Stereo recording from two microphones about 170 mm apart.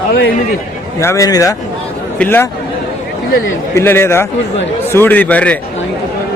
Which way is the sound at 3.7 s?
15° left (ahead or behind).